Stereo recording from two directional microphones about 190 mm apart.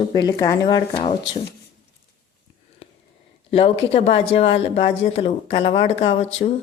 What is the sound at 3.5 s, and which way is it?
Speech, 30° left (ahead or behind).